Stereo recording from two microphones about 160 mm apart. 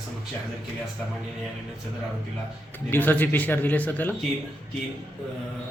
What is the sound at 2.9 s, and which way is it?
Speech, 10° left (ahead or behind).